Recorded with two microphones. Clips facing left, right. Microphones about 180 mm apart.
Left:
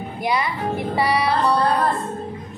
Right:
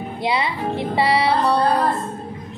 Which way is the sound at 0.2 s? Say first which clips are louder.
Even; 25° right (ahead or behind).